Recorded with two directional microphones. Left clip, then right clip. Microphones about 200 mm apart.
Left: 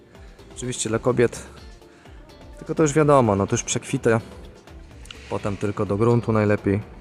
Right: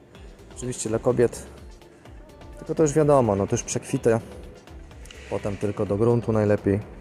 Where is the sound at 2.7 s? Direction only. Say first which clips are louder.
Left 2 dB; 25° left (ahead or behind).